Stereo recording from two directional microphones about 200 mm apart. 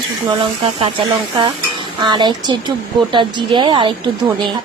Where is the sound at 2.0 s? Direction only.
20° right (ahead or behind).